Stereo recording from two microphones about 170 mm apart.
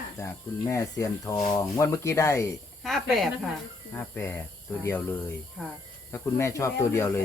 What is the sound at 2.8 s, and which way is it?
Speech, centre (ahead or behind).